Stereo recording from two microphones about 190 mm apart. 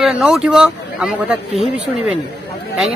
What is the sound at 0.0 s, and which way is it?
Speech, 5° right (ahead or behind).